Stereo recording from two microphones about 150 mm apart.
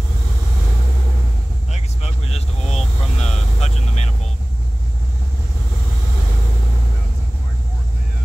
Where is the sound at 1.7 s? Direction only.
45° left (ahead or behind).